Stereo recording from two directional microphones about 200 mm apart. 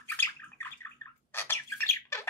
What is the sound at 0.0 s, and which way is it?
Bird, 10° left (ahead or behind).